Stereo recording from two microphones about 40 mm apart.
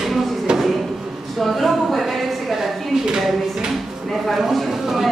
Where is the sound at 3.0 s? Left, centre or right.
Centre.